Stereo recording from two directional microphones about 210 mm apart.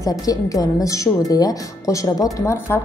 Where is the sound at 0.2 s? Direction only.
15° left (ahead or behind).